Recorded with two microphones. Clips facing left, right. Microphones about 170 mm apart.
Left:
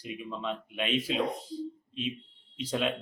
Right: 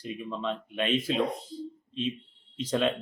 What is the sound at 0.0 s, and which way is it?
Speech, 5° left (ahead or behind).